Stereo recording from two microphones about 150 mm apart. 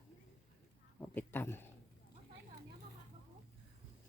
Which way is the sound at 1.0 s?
15° left (ahead or behind).